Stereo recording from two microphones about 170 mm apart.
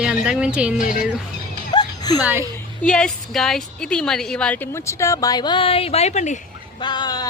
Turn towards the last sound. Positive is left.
turn(degrees=25)  # may be behind; listen again after turning